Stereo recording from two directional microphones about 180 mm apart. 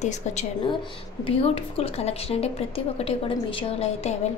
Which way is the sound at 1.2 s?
30° left (ahead or behind).